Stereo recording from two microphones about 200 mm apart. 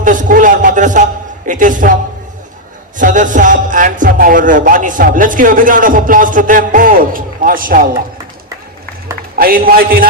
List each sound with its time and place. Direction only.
0.0 s a man's voice: 40° right (ahead or behind)
3.0 s a man's voice: 40° right (ahead or behind)
9.4 s a man's voice: 45° right (ahead or behind)